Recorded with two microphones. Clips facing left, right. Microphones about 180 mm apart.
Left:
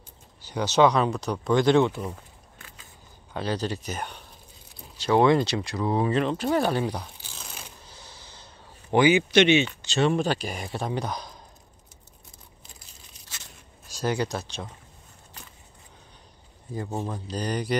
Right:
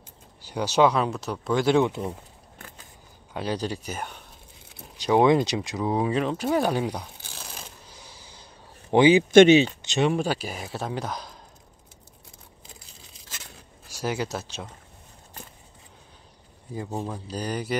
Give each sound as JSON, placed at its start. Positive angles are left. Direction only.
{"t": 0.5, "sound": "speech", "side_deg": -10}
{"t": 1.9, "sound": "speech", "side_deg": -20}
{"t": 3.3, "sound": "speech", "side_deg": -10}
{"t": 5.8, "sound": "crumpling", "side_deg": -10}
{"t": 8.9, "sound": "speech", "side_deg": -25}
{"t": 9.3, "sound": "speech", "side_deg": -45}
{"t": 9.8, "sound": "speech", "side_deg": -15}
{"t": 13.8, "sound": "speech", "side_deg": -5}
{"t": 16.7, "sound": "speech", "side_deg": -10}